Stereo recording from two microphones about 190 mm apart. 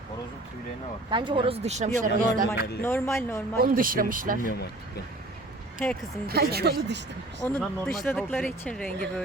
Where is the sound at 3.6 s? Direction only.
50° right (ahead or behind).